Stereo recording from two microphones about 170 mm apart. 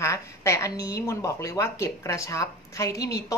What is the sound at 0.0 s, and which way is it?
A woman's voice, 15° left (ahead or behind).